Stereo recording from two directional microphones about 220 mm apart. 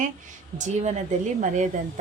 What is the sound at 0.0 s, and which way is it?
A woman's voice, 35° right (ahead or behind).